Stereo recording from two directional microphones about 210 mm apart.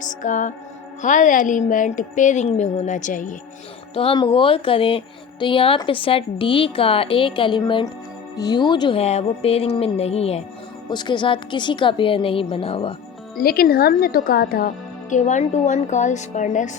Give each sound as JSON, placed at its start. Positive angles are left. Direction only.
{"t": 0.0, "sound": "music", "side_deg": 35}
{"t": 1.0, "sound": "speech", "side_deg": 35}
{"t": 3.9, "sound": "speech", "side_deg": 25}
{"t": 13.3, "sound": "speech", "side_deg": 45}